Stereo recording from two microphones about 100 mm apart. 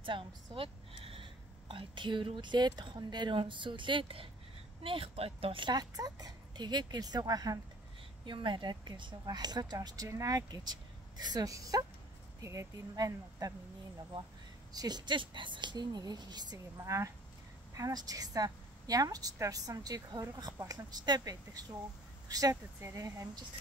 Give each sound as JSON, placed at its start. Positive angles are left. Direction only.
{"t": 0.0, "sound": "a woman's voice", "side_deg": -60}
{"t": 8.3, "sound": "a woman's voice", "side_deg": -50}
{"t": 14.7, "sound": "speech", "side_deg": -40}
{"t": 16.5, "sound": "a woman's voice", "side_deg": -30}